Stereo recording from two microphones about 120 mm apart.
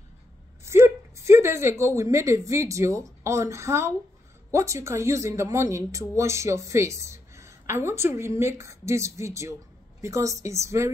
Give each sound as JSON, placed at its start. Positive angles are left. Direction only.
{"t": 0.7, "sound": "a woman's voice", "side_deg": -20}